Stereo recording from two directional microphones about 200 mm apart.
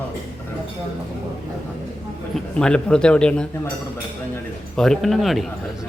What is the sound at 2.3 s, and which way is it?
A man's voice, 5° left (ahead or behind).